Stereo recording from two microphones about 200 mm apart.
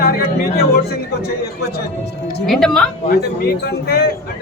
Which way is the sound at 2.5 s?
Centre (ahead or behind).